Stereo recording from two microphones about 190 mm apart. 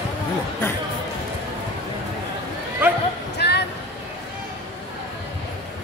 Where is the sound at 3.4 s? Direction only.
60° left (ahead or behind).